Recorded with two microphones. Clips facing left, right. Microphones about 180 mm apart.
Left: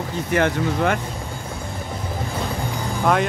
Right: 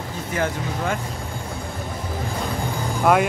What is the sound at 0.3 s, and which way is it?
Speech, 70° left (ahead or behind).